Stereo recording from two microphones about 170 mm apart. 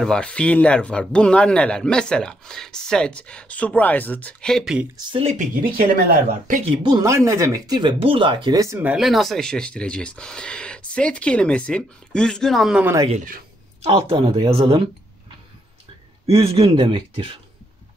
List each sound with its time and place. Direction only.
0.0 s speech: 5° left (ahead or behind)
4.9 s speech: 25° right (ahead or behind)
5.2 s speech: 55° right (ahead or behind)
6.6 s speech: 25° right (ahead or behind)
8.5 s speech: 20° right (ahead or behind)
13.8 s speech: 35° right (ahead or behind)
16.3 s speech: 35° right (ahead or behind)